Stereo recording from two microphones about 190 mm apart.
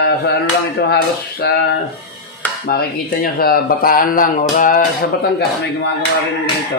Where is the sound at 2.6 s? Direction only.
50° left (ahead or behind).